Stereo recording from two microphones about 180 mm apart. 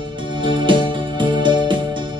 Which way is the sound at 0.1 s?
25° right (ahead or behind).